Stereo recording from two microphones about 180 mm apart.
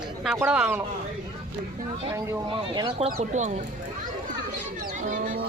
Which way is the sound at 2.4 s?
30° right (ahead or behind).